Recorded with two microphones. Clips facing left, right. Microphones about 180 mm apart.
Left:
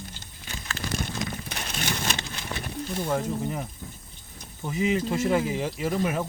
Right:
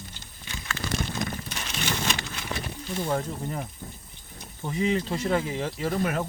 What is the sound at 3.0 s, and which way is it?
Speech, 5° left (ahead or behind).